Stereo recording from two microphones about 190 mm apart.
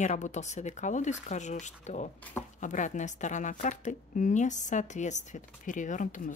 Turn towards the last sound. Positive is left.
turn(degrees=40)  # may be behind; listen again after turning